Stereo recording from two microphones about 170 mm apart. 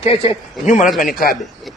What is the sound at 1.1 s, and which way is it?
Speech, 60° left (ahead or behind).